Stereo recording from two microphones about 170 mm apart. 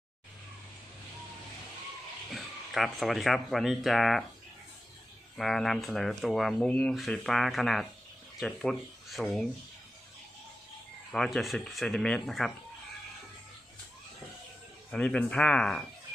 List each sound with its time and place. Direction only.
2.3 s speech: centre (ahead or behind)
5.4 s speech: centre (ahead or behind)
11.1 s speech: centre (ahead or behind)
14.8 s speech: 5° left (ahead or behind)